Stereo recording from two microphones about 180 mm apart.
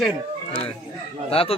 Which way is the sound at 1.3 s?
30° left (ahead or behind).